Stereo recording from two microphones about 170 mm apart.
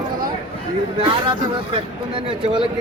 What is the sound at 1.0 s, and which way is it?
Speech, 30° right (ahead or behind).